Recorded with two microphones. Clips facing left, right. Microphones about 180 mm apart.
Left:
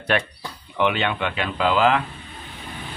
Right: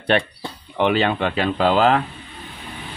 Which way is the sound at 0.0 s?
30° right (ahead or behind).